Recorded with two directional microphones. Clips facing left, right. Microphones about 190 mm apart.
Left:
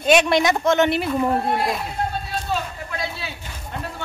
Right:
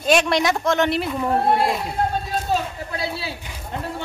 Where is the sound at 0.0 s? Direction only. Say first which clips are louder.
Left 2 dB; centre (ahead or behind).